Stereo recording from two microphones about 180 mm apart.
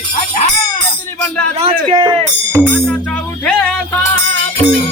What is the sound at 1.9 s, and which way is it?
Speech, 25° right (ahead or behind).